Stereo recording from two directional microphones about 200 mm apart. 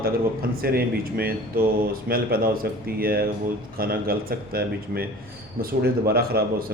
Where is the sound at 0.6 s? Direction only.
50° right (ahead or behind).